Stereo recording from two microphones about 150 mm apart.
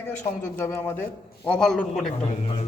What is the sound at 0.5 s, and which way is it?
A man's voice, 15° left (ahead or behind).